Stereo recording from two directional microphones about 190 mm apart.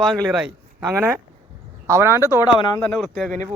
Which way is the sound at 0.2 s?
Centre (ahead or behind).